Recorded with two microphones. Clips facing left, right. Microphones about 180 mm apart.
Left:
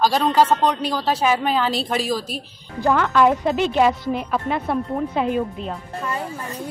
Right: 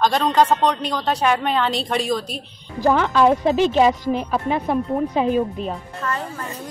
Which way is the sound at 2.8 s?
20° right (ahead or behind).